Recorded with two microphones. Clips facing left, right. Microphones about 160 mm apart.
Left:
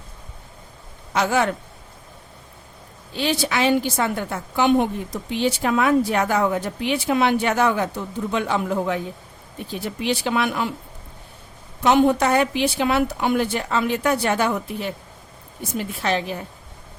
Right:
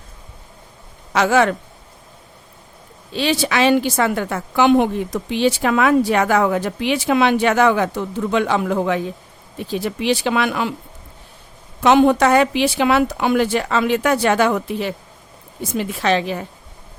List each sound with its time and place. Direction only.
1.1 s a woman's voice: 90° right
3.1 s a woman's voice: 90° right
11.8 s a woman's voice: 90° right